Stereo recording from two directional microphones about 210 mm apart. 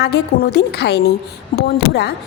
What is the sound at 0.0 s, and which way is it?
A woman's voice, 50° left (ahead or behind).